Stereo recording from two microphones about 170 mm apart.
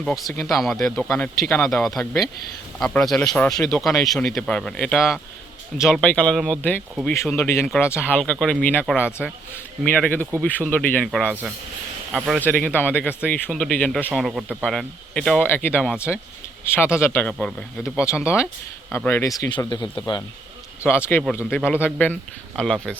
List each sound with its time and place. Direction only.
0.0 s speech: centre (ahead or behind)
9.8 s speech: 10° left (ahead or behind)
12.4 s speech: 10° left (ahead or behind)
17.3 s speech: centre (ahead or behind)
17.9 s speech: 15° left (ahead or behind)
20.8 s speech: 15° left (ahead or behind)